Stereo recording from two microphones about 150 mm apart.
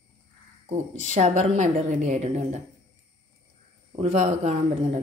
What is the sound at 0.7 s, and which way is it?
Speech, 50° right (ahead or behind).